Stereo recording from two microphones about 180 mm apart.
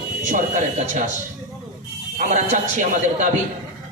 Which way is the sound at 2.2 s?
40° right (ahead or behind).